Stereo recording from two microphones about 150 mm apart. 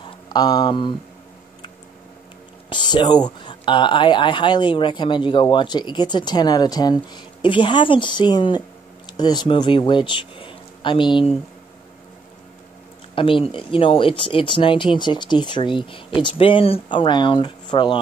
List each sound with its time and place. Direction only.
0.0 s speech: 30° left (ahead or behind)
2.7 s speech: 30° left (ahead or behind)
13.1 s speech: 35° left (ahead or behind)